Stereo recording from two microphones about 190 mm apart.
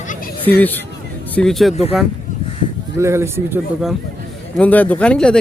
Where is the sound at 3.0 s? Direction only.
15° right (ahead or behind).